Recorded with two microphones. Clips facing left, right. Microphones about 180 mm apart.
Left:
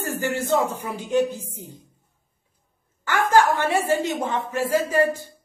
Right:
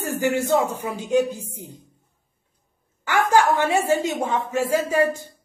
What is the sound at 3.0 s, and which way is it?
A woman's voice, 15° right (ahead or behind).